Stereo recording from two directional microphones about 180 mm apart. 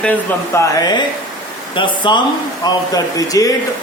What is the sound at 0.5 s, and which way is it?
Speech, 20° left (ahead or behind).